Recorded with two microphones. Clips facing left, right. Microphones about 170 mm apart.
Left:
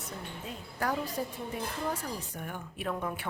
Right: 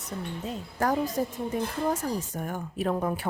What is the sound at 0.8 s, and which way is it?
A woman's voice, 45° right (ahead or behind).